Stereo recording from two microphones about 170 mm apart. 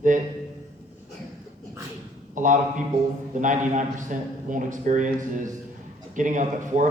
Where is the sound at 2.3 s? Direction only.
50° right (ahead or behind).